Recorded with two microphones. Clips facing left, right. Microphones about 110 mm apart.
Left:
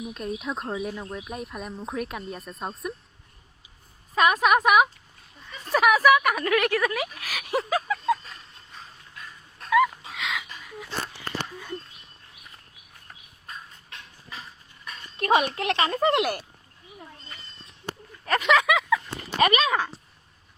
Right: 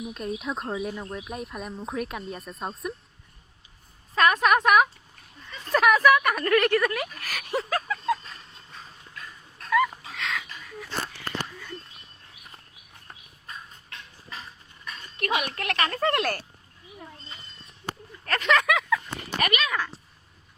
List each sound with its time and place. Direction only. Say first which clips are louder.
0.0 s speech: even; centre (ahead or behind)
4.1 s speech: left 1 dB; 10° left (ahead or behind)
5.5 s a sound: even; 5° left (ahead or behind)
9.6 s dog: left 3 dB; centre (ahead or behind)
10.1 s a sound: even; 5° left (ahead or behind)
15.2 s speech: left 6 dB; 30° left (ahead or behind)
18.3 s speech: left 2 dB; 10° left (ahead or behind)
19.4 s speech: left 6 dB; 30° left (ahead or behind)